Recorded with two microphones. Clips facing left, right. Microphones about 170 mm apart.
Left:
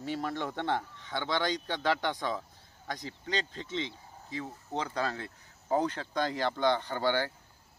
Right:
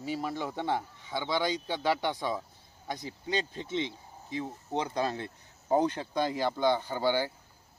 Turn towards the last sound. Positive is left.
turn(degrees=-10)  # may be behind; listen again after turning